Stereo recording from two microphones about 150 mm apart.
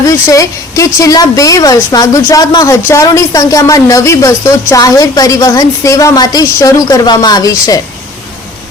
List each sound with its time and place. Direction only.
0.0 s speech: 20° left (ahead or behind)